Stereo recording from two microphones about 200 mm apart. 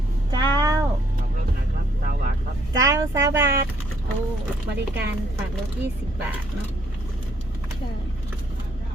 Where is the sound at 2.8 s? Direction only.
15° right (ahead or behind).